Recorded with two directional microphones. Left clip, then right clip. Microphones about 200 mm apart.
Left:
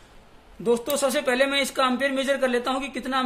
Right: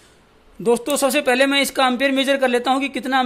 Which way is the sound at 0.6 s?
40° right (ahead or behind).